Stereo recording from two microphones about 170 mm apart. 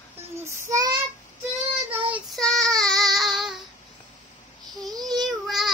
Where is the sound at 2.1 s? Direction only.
Centre (ahead or behind).